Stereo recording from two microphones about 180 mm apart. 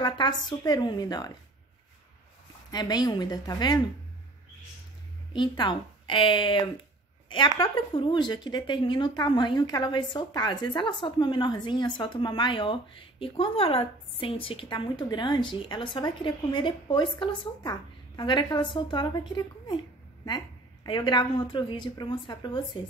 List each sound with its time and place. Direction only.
0.0 s speech: 25° left (ahead or behind)
2.7 s speech: 20° left (ahead or behind)
5.3 s speech: 25° left (ahead or behind)